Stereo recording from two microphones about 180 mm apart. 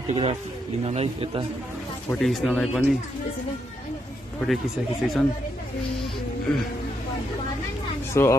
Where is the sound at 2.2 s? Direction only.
Centre (ahead or behind).